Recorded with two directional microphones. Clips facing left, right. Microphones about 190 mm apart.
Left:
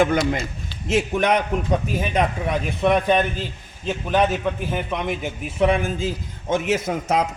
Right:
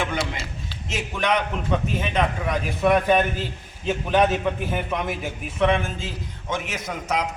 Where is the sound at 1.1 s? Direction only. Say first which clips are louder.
Left 2 dB; 45° left (ahead or behind).